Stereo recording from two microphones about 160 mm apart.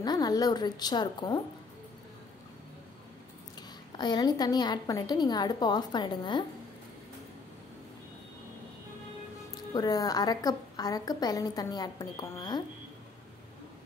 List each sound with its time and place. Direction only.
0.0 s a woman's voice: 25° left (ahead or behind)
3.9 s a woman's voice: 25° left (ahead or behind)
9.8 s a woman's voice: 25° left (ahead or behind)